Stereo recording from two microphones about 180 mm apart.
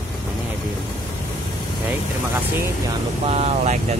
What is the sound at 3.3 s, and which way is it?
Speech, 35° right (ahead or behind).